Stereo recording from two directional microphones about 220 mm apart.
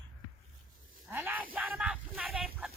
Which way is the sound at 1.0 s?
10° right (ahead or behind).